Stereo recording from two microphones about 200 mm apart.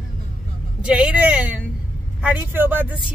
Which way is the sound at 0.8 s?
5° right (ahead or behind).